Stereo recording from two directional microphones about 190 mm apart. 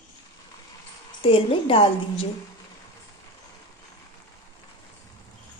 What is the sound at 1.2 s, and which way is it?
A woman's voice, 30° left (ahead or behind).